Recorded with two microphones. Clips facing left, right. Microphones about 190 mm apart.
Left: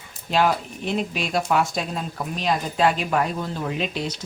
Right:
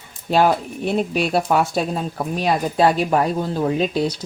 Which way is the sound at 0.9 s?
35° right (ahead or behind).